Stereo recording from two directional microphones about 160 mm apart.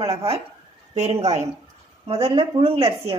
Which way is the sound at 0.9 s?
40° right (ahead or behind).